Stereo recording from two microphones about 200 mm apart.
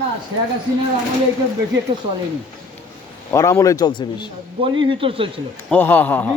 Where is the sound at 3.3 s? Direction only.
15° left (ahead or behind).